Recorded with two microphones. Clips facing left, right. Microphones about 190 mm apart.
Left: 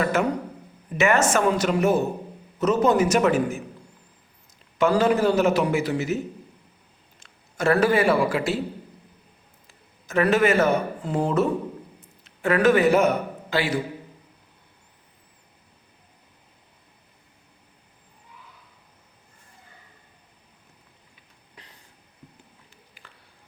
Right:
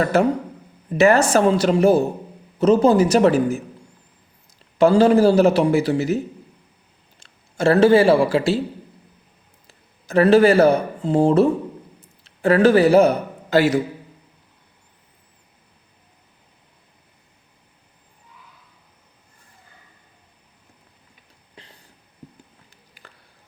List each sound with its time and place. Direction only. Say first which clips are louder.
0.0 s a man's voice: right 5 dB; 35° right (ahead or behind)
4.8 s a man's voice: right 6 dB; 30° right (ahead or behind)
7.2 s a man's voice: right 5 dB; 30° right (ahead or behind)
9.6 s a man's voice: right 6 dB; 35° right (ahead or behind)
21.6 s a sound: right 4 dB; 30° right (ahead or behind)
23.0 s a sound: right 4 dB; 40° right (ahead or behind)